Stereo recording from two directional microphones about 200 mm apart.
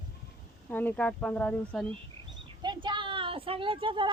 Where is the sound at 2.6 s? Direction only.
20° right (ahead or behind).